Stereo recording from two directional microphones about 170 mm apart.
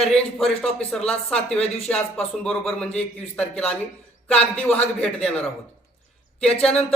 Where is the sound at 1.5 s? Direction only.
35° left (ahead or behind).